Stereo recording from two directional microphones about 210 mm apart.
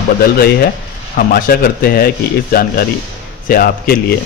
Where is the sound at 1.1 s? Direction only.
45° left (ahead or behind).